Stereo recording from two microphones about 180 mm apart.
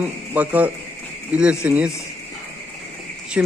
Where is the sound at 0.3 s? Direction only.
10° right (ahead or behind).